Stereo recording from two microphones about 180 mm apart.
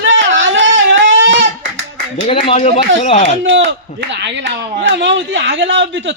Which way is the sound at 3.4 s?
90° right.